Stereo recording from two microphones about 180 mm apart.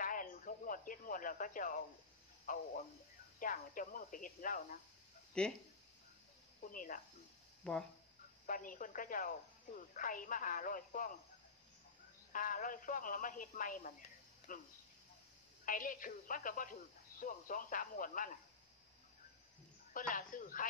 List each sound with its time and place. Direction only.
0.0 s radio: 50° left (ahead or behind)
2.4 s speech: 50° left (ahead or behind)
5.3 s speech: 5° left (ahead or behind)
6.6 s speech: 50° left (ahead or behind)
7.6 s speech: 5° left (ahead or behind)
8.5 s speech: 50° left (ahead or behind)
12.3 s speech: 50° left (ahead or behind)
19.9 s speech: 50° left (ahead or behind)